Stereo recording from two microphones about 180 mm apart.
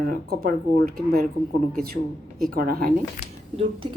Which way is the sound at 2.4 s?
55° right (ahead or behind).